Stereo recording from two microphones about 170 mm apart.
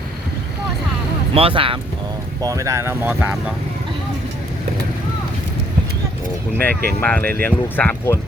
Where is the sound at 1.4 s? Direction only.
30° right (ahead or behind).